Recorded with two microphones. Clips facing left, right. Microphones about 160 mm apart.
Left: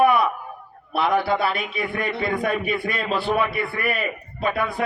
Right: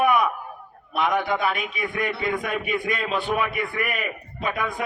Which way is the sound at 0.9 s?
35° left (ahead or behind).